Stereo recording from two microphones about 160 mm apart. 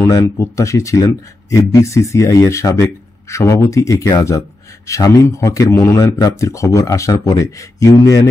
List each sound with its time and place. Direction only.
0.4 s speech: 20° left (ahead or behind)